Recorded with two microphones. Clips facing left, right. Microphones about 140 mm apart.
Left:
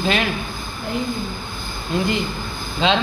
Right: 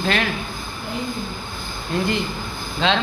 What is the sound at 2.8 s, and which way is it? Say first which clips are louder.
Speech: left 2 dB; 15° left (ahead or behind).